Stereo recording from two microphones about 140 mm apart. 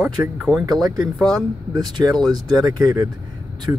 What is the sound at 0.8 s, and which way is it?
Speech, 25° right (ahead or behind).